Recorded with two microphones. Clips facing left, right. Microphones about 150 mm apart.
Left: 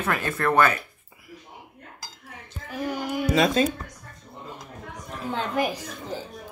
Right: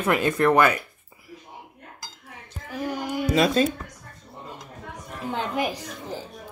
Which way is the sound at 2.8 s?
15° right (ahead or behind).